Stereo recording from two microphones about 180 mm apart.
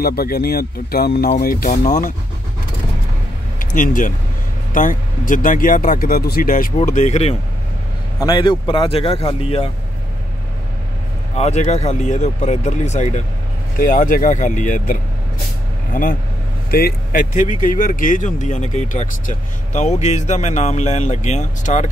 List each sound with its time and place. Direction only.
0.0 s speech: 55° left (ahead or behind)
3.5 s speech: 50° left (ahead or behind)
8.2 s speech: 25° left (ahead or behind)
11.3 s speech: 40° left (ahead or behind)